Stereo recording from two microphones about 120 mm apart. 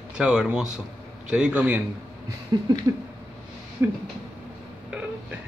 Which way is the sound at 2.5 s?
30° right (ahead or behind).